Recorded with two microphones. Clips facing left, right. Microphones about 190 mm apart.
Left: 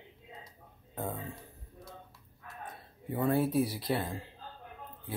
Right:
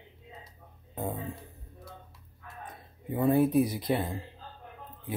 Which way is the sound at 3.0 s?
15° right (ahead or behind).